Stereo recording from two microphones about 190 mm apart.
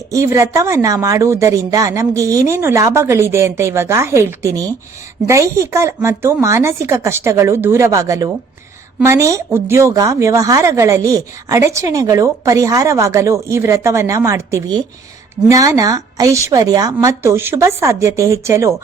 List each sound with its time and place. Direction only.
0.1 s a woman's voice: 15° right (ahead or behind)